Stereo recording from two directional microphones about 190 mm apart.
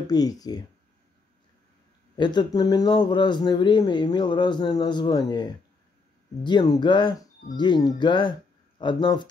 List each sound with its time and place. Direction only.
0.0 s speech: 20° left (ahead or behind)
2.1 s speech: 25° left (ahead or behind)